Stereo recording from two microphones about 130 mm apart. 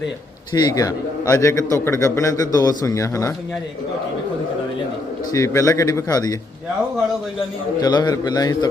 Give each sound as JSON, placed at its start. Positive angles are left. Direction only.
{"t": 0.5, "sound": "a man's voice", "side_deg": 30}
{"t": 5.3, "sound": "a man's voice", "side_deg": 25}
{"t": 7.8, "sound": "a man's voice", "side_deg": 30}